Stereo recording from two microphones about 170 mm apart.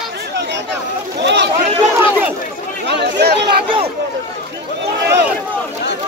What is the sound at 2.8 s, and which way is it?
Chatter, 80° right.